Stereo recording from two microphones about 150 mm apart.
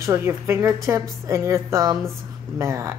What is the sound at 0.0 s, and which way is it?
A woman's voice, 20° right (ahead or behind).